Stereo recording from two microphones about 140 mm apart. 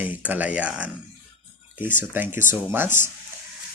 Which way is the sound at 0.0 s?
10° right (ahead or behind).